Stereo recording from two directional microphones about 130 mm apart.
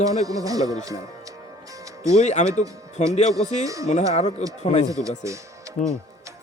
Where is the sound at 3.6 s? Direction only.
25° right (ahead or behind).